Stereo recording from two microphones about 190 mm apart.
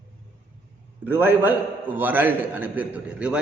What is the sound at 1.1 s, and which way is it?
A man's voice, 10° right (ahead or behind).